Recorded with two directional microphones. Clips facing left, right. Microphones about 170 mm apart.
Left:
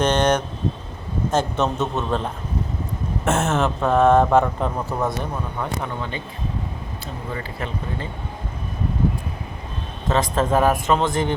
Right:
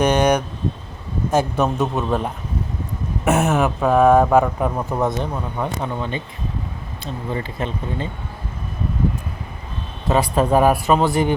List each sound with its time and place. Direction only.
0.0 s speech: 10° right (ahead or behind)
7.3 s speech: 25° right (ahead or behind)
10.1 s speech: 15° right (ahead or behind)